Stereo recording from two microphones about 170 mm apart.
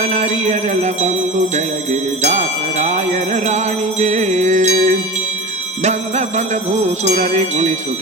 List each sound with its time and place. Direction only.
0.0 s jingle bell: 40° right (ahead or behind)